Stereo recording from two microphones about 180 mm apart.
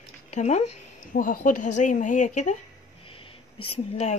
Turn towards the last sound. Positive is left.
turn(degrees=35)  # may be behind; listen again after turning